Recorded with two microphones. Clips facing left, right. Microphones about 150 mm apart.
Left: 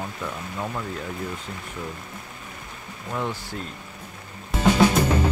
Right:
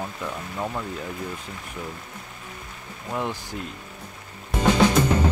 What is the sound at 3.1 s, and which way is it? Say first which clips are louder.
Speech: even; 15° right (ahead or behind).